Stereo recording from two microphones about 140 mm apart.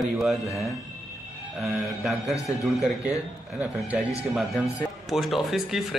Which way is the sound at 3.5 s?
10° right (ahead or behind).